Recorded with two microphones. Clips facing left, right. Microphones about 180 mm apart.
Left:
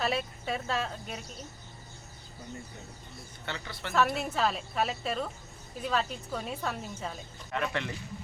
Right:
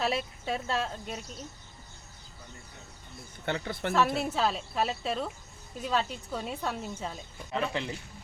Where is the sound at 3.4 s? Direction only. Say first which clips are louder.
Right 8 dB; 50° right (ahead or behind).